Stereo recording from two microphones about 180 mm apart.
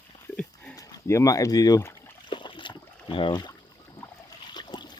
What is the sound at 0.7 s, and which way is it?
Boat, 20° left (ahead or behind).